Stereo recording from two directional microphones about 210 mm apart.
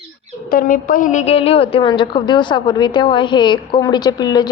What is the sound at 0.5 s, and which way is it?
A woman's voice, 40° left (ahead or behind).